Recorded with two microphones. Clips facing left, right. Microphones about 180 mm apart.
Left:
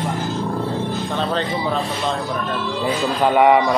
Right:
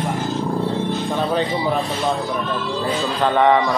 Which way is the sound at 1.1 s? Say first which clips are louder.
Right 1 dB; 15° right (ahead or behind).